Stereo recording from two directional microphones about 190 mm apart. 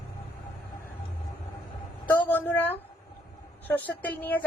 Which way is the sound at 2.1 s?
10° left (ahead or behind).